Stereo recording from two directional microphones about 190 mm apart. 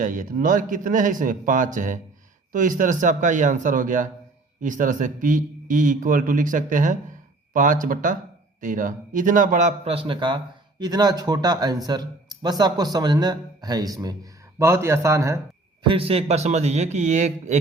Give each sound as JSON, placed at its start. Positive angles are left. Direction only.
{"t": 0.0, "sound": "a man's voice", "side_deg": -45}
{"t": 15.9, "sound": "a man's voice", "side_deg": -30}